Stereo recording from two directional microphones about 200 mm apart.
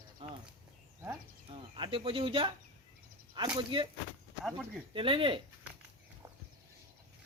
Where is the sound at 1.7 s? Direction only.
25° right (ahead or behind).